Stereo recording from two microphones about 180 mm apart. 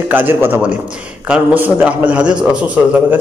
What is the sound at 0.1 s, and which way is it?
A man's voice, 10° right (ahead or behind).